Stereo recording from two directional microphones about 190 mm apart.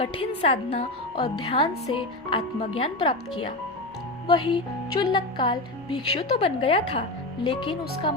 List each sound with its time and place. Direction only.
0.0 s speech: 30° left (ahead or behind)